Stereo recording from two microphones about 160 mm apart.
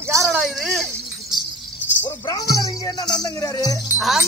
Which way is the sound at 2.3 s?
25° left (ahead or behind).